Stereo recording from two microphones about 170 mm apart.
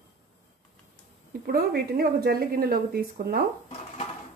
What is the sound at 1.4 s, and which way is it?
Speech, 65° right (ahead or behind).